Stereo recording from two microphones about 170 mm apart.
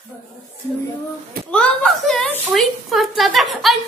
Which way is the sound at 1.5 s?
5° left (ahead or behind).